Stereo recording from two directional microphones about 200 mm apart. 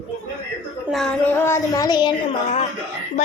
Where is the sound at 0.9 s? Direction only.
Centre (ahead or behind); by 2.1 s 20° left (ahead or behind).